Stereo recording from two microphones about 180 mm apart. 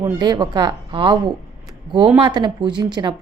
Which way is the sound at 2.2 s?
25° right (ahead or behind).